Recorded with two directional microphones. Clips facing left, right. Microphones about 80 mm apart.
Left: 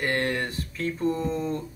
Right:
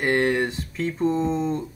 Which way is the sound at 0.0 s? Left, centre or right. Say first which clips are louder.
Right 5 dB; right.